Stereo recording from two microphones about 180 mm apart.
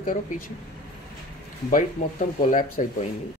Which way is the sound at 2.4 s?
50° left (ahead or behind).